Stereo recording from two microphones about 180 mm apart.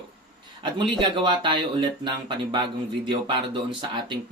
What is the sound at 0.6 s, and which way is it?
Speech, 25° right (ahead or behind).